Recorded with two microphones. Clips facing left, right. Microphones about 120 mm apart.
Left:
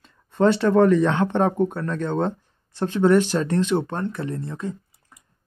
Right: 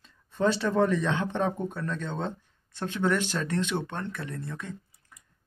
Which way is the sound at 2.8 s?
35° left (ahead or behind).